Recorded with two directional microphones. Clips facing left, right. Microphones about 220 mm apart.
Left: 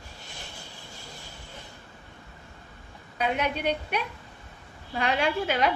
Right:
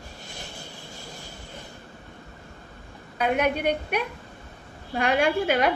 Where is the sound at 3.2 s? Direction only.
50° right (ahead or behind).